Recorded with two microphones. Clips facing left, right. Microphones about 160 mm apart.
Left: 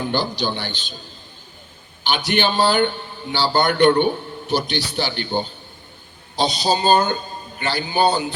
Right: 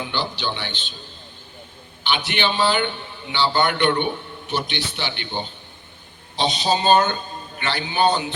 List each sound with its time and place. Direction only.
0.0 s a man's voice: 40° left (ahead or behind)
2.0 s a man's voice: 40° left (ahead or behind)